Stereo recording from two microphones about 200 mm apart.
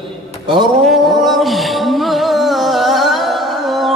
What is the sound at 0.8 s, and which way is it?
Music, centre (ahead or behind).